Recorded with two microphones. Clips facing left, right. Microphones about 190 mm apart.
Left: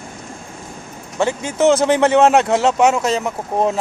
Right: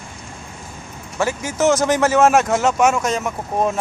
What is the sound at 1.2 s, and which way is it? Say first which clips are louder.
Speech: left 3 dB; 20° left (ahead or behind).